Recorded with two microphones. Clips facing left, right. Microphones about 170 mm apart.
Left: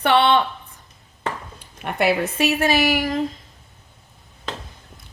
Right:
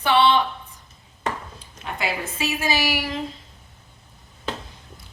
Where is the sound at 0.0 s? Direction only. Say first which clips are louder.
Left 2 dB; 60° left (ahead or behind).